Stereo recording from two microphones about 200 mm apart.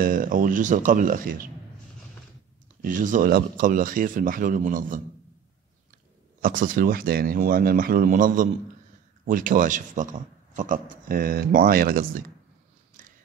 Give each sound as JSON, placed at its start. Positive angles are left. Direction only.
{"t": 0.0, "sound": "speech", "side_deg": -45}
{"t": 2.8, "sound": "speech", "side_deg": -40}
{"t": 6.4, "sound": "speech", "side_deg": -45}
{"t": 13.0, "sound": "a sound", "side_deg": -40}